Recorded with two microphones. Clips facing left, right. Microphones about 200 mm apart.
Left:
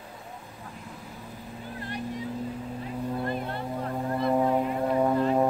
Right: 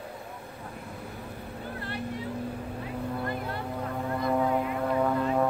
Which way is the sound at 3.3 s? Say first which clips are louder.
Left 2 dB; 25° left (ahead or behind).